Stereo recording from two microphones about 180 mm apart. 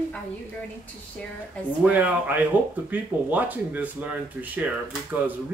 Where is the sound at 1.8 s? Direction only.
10° right (ahead or behind).